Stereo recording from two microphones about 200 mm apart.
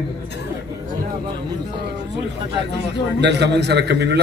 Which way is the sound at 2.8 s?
55° right (ahead or behind).